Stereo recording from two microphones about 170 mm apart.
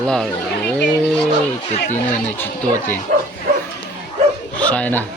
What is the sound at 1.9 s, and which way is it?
Speech, 10° left (ahead or behind).